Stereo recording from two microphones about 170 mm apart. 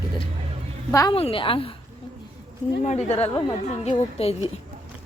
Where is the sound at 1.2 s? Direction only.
35° left (ahead or behind).